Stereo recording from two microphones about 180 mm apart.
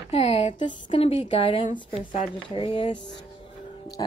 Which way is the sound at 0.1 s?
35° left (ahead or behind).